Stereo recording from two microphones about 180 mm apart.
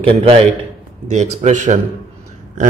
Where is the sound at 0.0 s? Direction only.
35° right (ahead or behind).